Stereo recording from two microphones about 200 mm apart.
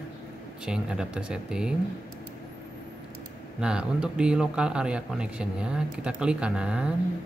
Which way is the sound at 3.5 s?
5° right (ahead or behind).